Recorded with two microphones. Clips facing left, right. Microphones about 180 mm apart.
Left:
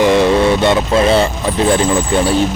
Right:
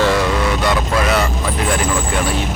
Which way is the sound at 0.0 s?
25° left (ahead or behind).